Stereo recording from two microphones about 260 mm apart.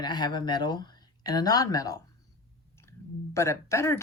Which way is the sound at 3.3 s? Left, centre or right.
Centre.